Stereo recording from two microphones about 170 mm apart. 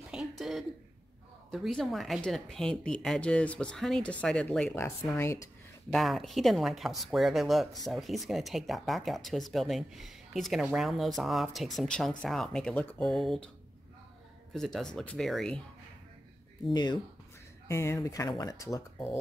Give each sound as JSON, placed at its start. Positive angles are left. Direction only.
{"t": 0.1, "sound": "throat clearing", "side_deg": 0}
{"t": 1.5, "sound": "speech", "side_deg": 0}
{"t": 4.7, "sound": "speech", "side_deg": 15}
{"t": 5.9, "sound": "speech", "side_deg": 0}
{"t": 14.5, "sound": "speech", "side_deg": 5}
{"t": 16.7, "sound": "speech", "side_deg": 25}